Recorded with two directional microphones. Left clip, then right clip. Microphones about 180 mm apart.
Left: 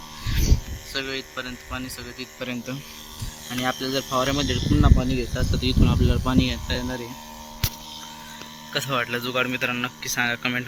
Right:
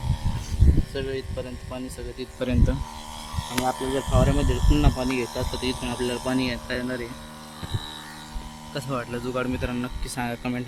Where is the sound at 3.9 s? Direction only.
20° left (ahead or behind).